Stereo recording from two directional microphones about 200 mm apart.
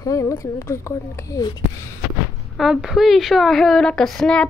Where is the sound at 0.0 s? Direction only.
15° left (ahead or behind).